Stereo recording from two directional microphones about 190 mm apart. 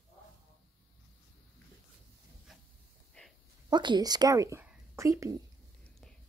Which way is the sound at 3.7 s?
25° right (ahead or behind).